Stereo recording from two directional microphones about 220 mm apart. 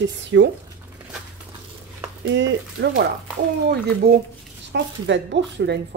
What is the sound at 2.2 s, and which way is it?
Speech, 50° right (ahead or behind).